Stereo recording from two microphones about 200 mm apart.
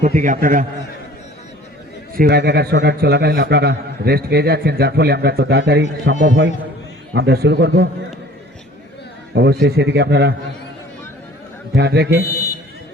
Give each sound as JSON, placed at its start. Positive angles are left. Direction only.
{"t": 0.0, "sound": "a man's voice", "side_deg": -40}
{"t": 2.1, "sound": "a man's voice", "side_deg": -50}
{"t": 9.3, "sound": "a man's voice", "side_deg": -60}
{"t": 11.7, "sound": "a man's voice", "side_deg": -55}